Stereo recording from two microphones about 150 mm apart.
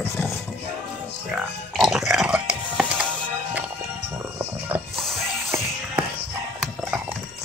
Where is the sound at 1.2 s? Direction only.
Centre (ahead or behind).